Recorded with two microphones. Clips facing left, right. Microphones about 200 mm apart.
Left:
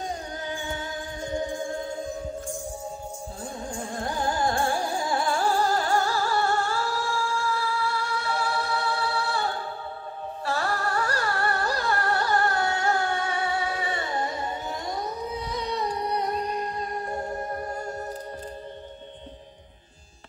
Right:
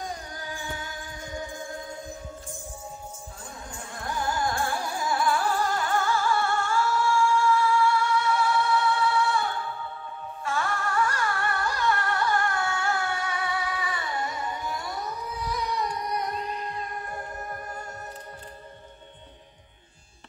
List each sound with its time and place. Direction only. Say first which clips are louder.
0.5 s music: left 3 dB; 25° left (ahead or behind)
3.7 s music: left 2 dB; 30° left (ahead or behind)
17.1 s music: left 6 dB; 25° left (ahead or behind)